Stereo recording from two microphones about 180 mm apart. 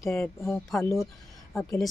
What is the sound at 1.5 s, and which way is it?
Speech, 5° left (ahead or behind).